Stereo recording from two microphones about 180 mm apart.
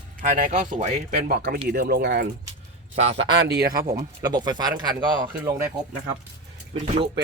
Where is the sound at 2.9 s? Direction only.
35° right (ahead or behind).